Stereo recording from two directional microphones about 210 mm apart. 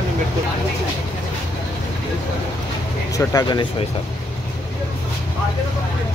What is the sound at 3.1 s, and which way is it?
Speech, 20° left (ahead or behind).